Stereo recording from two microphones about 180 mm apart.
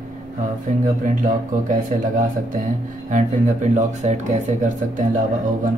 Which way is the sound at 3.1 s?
45° right (ahead or behind).